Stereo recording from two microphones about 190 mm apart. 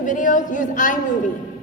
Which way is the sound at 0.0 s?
45° left (ahead or behind).